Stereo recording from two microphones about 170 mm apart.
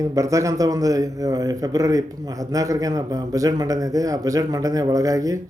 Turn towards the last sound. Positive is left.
turn(degrees=-20)  # may be behind; listen again after turning